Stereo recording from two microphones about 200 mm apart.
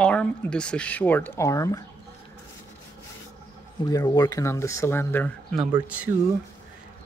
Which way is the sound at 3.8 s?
20° left (ahead or behind).